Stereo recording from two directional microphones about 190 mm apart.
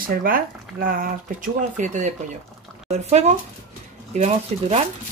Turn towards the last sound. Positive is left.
turn(degrees=-35)  # may be behind; listen again after turning